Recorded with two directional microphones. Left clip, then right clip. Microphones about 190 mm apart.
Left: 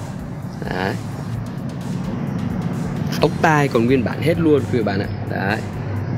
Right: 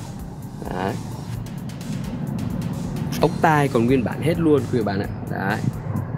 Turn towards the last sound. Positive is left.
turn(degrees=-10)  # may be behind; listen again after turning